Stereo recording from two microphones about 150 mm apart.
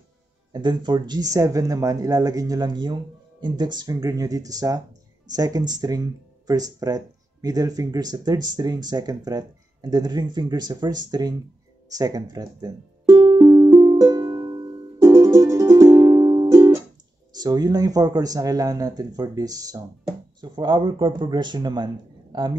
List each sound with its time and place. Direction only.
0.5 s speech: 30° right (ahead or behind)
11.9 s music: 25° right (ahead or behind)
17.3 s speech: 25° right (ahead or behind)